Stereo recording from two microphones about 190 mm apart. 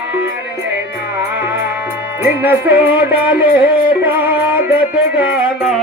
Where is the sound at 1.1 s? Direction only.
10° right (ahead or behind).